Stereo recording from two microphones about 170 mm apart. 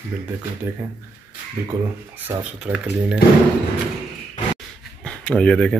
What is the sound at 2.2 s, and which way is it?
Speech, 5° right (ahead or behind).